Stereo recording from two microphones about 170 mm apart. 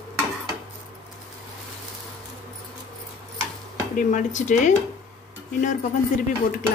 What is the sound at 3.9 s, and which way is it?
Speech, 45° left (ahead or behind).